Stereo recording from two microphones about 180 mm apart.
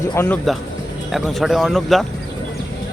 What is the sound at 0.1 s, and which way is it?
Speech, 15° left (ahead or behind).